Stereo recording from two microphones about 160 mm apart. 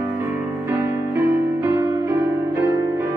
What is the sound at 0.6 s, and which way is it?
Music, 20° right (ahead or behind).